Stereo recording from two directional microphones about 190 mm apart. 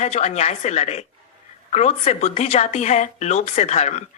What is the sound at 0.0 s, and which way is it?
A woman's voice, 35° left (ahead or behind).